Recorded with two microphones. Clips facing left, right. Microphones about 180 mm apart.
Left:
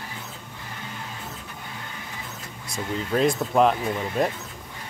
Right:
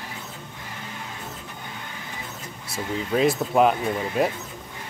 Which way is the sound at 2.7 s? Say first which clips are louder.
Right 1 dB; 5° right (ahead or behind).